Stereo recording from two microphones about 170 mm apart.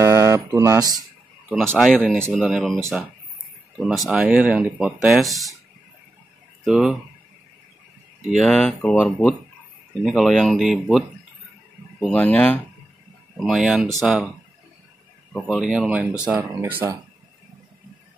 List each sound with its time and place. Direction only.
0.0 s a sound: 15° right (ahead or behind)
1.5 s speech: centre (ahead or behind)
3.8 s speech: centre (ahead or behind)
6.6 s speech: 5° right (ahead or behind)
8.2 s speech: centre (ahead or behind)
13.4 s speech: centre (ahead or behind)
15.3 s speech: centre (ahead or behind)